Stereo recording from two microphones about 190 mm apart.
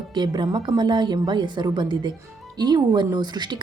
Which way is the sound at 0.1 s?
25° right (ahead or behind).